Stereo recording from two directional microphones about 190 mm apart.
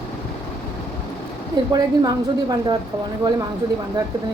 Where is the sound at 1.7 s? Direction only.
20° right (ahead or behind).